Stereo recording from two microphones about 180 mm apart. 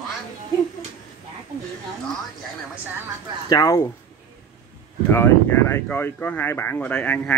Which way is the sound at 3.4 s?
20° left (ahead or behind).